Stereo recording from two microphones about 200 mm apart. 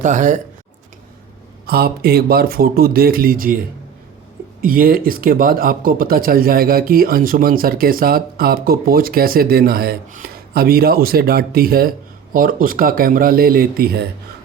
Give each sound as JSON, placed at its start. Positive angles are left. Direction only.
{"t": 0.0, "sound": "speech", "side_deg": -40}
{"t": 1.6, "sound": "speech", "side_deg": -50}
{"t": 4.6, "sound": "speech", "side_deg": -45}